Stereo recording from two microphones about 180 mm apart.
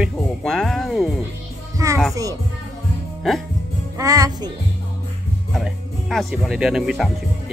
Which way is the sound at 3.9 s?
20° right (ahead or behind).